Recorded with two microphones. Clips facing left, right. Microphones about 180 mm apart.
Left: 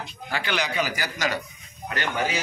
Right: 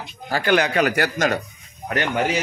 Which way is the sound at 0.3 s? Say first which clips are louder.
Right 9 dB; 50° right (ahead or behind).